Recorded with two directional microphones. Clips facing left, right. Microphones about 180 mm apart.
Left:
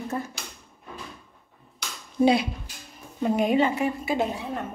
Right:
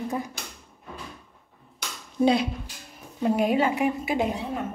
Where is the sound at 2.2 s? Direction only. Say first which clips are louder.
Left 1 dB; centre (ahead or behind).